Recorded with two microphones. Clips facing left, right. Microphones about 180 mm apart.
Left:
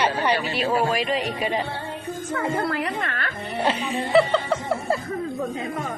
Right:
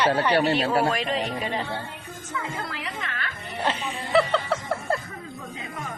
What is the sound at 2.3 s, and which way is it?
Speech, 60° left (ahead or behind).